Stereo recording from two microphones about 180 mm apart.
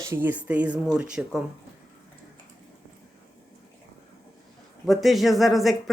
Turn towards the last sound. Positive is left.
turn(degrees=0)  # may be behind; listen again after turning